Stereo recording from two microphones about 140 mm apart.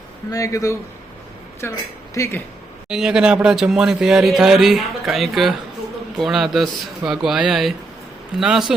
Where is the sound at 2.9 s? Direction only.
5° right (ahead or behind).